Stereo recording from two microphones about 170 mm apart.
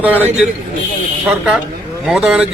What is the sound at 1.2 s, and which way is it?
Speech, centre (ahead or behind).